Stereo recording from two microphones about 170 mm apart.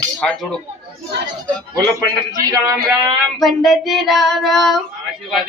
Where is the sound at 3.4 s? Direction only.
Centre (ahead or behind).